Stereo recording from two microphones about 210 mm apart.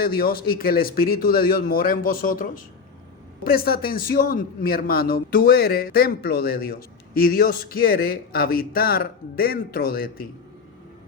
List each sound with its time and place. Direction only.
0.0 s a man's voice: 45° left (ahead or behind)